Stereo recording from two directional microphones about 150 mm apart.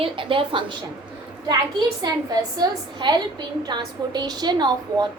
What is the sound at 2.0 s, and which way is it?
A woman's voice, 25° right (ahead or behind).